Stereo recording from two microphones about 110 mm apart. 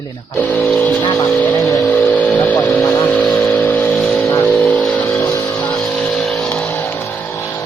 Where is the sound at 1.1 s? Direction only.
30° left (ahead or behind).